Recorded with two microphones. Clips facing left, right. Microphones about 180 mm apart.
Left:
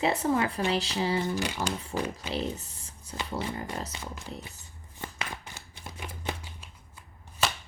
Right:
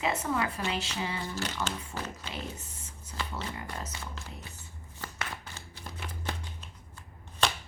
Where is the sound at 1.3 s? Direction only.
15° left (ahead or behind).